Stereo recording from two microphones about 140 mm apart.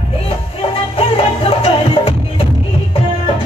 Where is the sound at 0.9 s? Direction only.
40° left (ahead or behind).